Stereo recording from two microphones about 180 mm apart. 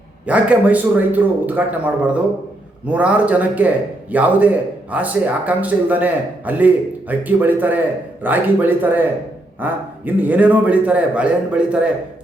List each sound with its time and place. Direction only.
0.3 s speech: 5° right (ahead or behind)